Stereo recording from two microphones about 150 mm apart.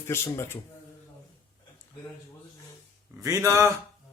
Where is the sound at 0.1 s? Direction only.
15° left (ahead or behind).